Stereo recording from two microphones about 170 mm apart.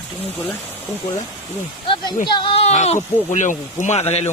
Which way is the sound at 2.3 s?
30° left (ahead or behind).